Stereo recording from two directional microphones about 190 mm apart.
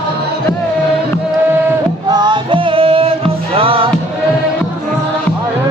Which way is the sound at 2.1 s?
25° right (ahead or behind).